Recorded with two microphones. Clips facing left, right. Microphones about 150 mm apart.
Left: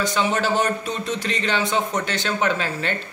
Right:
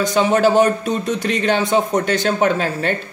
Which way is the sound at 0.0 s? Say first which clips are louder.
Right 7 dB; 45° right (ahead or behind).